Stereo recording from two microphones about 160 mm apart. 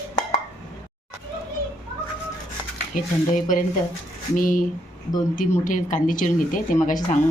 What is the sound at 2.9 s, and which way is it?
A woman's voice, 55° left (ahead or behind).